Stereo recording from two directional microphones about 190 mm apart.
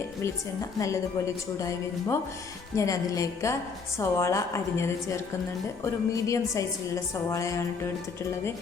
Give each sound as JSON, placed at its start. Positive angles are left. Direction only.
{"t": 0.8, "sound": "a woman's voice", "side_deg": 15}